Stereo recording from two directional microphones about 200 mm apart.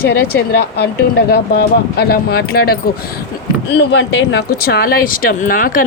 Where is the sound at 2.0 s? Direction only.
50° left (ahead or behind).